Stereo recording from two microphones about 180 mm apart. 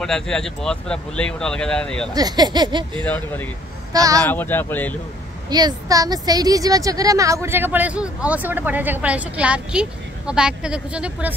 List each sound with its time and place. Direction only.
0.0 s speech: 5° left (ahead or behind)
2.1 s speech: 20° right (ahead or behind)
3.0 s speech: 10° left (ahead or behind)
3.9 s speech: 20° right (ahead or behind)
4.2 s speech: 10° left (ahead or behind)
5.5 s a woman's voice: 25° right (ahead or behind); by 11.3 s 5° right (ahead or behind)